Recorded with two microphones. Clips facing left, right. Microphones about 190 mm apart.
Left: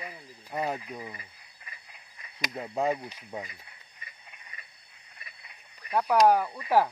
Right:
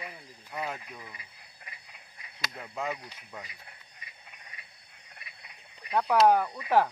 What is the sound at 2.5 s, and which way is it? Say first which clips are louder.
Speech: left 7 dB; 35° left (ahead or behind).